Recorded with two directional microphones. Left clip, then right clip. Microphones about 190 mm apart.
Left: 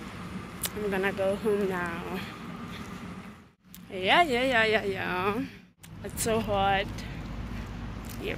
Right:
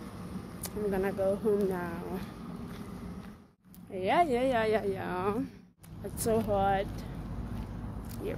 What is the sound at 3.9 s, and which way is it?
Speech, 5° right (ahead or behind).